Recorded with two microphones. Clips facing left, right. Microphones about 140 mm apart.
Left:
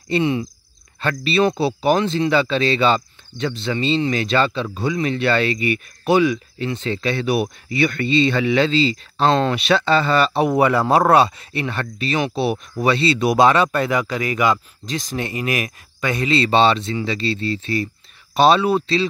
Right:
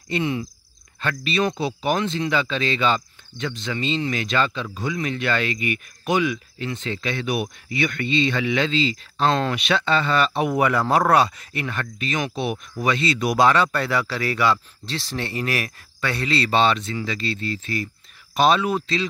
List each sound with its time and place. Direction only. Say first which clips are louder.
0.1 s speech: left 5 dB; 25° left (ahead or behind)